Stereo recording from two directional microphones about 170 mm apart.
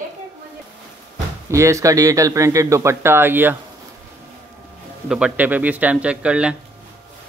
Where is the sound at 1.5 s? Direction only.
15° right (ahead or behind).